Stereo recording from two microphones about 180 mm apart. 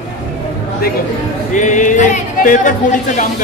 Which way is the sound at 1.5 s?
45° left (ahead or behind).